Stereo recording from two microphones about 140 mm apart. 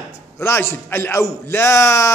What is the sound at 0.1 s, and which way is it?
A man's voice, 20° left (ahead or behind).